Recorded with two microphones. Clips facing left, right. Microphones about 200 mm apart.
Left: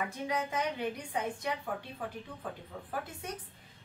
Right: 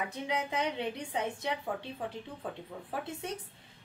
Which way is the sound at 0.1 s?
20° right (ahead or behind).